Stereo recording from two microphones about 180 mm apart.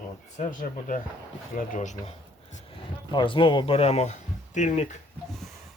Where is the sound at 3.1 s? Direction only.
25° left (ahead or behind).